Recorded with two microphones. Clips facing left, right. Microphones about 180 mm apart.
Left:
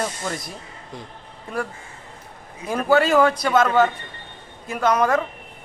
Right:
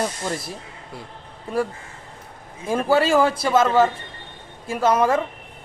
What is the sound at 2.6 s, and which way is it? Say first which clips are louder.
Speech: even; 30° right (ahead or behind).